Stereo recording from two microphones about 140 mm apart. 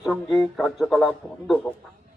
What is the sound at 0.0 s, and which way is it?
A man's voice, centre (ahead or behind).